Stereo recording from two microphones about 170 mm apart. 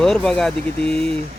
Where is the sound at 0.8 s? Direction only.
35° right (ahead or behind).